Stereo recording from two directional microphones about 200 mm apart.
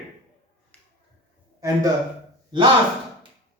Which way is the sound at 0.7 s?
5° left (ahead or behind).